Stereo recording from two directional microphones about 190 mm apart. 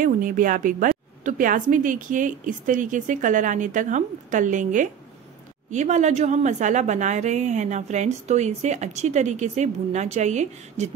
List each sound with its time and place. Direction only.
0.0 s a woman's voice: 45° right (ahead or behind)